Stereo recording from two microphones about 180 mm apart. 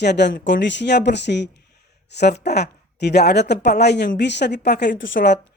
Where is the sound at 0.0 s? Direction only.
70° left (ahead or behind).